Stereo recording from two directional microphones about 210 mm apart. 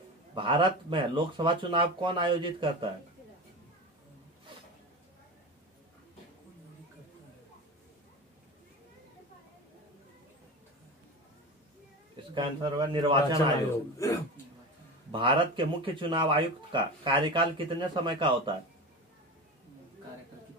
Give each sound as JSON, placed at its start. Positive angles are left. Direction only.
{"t": 0.3, "sound": "speech", "side_deg": -25}
{"t": 12.4, "sound": "speech", "side_deg": -20}
{"t": 13.9, "sound": "speech", "side_deg": 15}
{"t": 15.0, "sound": "speech", "side_deg": -25}